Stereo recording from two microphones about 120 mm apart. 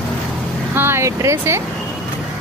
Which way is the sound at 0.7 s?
20° right (ahead or behind).